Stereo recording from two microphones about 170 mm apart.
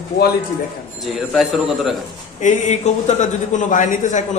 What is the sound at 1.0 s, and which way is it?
Speech, centre (ahead or behind).